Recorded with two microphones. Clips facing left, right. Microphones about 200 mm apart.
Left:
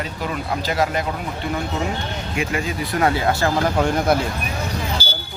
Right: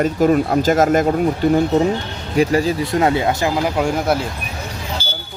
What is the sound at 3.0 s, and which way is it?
Speech, 20° right (ahead or behind).